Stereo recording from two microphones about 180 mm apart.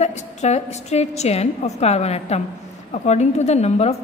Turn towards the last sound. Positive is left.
turn(degrees=35)  # may be behind; listen again after turning